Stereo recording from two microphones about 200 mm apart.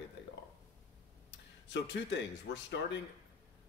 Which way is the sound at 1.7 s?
60° left (ahead or behind).